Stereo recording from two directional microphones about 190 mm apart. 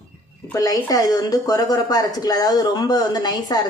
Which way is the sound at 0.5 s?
20° left (ahead or behind).